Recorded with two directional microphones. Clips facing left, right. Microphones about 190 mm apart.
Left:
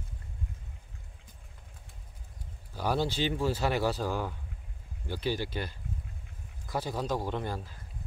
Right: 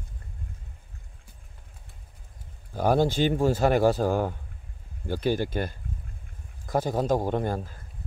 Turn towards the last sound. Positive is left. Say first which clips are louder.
# right 7 dB
turn(degrees=-50)  # may be behind; listen again after turning